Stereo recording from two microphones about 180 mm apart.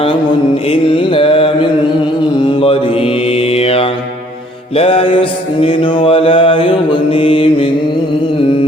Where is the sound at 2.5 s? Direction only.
30° left (ahead or behind).